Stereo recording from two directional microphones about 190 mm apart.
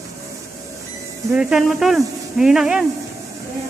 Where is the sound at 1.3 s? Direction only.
5° right (ahead or behind).